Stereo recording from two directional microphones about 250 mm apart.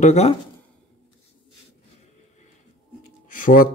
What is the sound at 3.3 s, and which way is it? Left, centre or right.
Speech, left.